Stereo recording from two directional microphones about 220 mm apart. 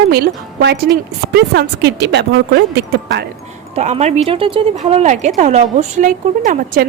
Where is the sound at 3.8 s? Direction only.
30° right (ahead or behind).